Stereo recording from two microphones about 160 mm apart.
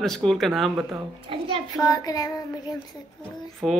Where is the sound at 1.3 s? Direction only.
35° right (ahead or behind).